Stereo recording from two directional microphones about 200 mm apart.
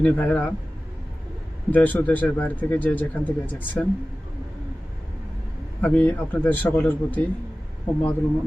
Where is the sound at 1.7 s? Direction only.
10° left (ahead or behind).